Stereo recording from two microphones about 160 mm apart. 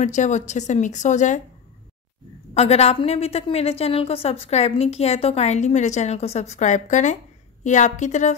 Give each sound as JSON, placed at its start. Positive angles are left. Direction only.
{"t": 0.0, "sound": "speech", "side_deg": 50}
{"t": 2.5, "sound": "a woman's voice", "side_deg": 40}